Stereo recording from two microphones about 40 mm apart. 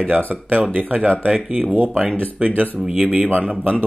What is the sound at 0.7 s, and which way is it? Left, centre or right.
Speech, right.